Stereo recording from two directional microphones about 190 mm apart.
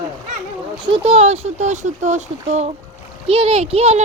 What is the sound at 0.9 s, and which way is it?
Speech, 30° right (ahead or behind).